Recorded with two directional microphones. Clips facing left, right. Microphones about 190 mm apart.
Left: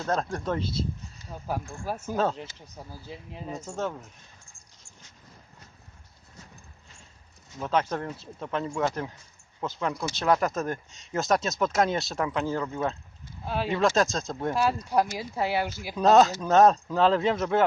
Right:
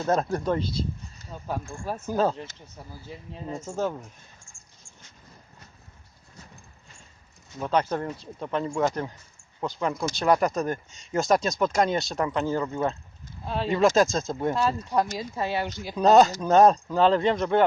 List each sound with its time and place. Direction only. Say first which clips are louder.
0.0 s speech: right 4 dB; 5° right (ahead or behind)
2.6 s speech: left 1 dB; 15° left (ahead or behind)
3.7 s speech: right 4 dB; centre (ahead or behind)
7.6 s speech: right 2 dB; centre (ahead or behind)
14.5 s speech: left 2 dB; 10° left (ahead or behind)